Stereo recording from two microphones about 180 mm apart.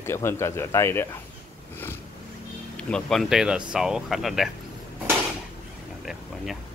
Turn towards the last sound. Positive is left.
turn(degrees=0)  # may be behind; listen again after turning